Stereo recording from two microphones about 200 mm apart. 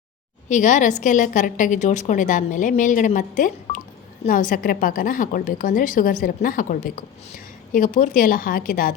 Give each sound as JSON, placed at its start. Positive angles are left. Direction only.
{"t": 0.4, "sound": "a woman's voice", "side_deg": 40}